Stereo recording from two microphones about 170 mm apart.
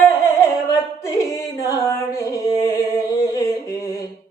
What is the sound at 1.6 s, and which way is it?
Music, 20° left (ahead or behind).